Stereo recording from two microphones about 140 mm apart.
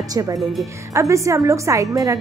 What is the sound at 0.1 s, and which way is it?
A woman's voice, 25° right (ahead or behind).